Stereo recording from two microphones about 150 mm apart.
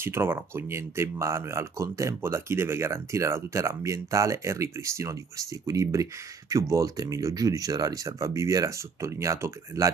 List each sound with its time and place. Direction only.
0.0 s speech: 15° right (ahead or behind)